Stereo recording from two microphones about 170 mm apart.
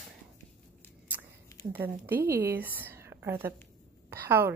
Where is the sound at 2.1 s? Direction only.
60° right (ahead or behind).